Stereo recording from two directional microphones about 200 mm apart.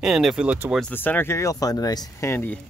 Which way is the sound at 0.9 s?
10° left (ahead or behind).